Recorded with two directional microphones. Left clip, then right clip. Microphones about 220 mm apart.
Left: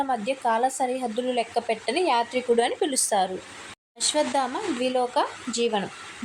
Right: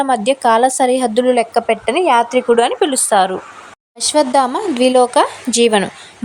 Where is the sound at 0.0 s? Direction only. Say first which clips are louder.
Right 11 dB; 45° right (ahead or behind).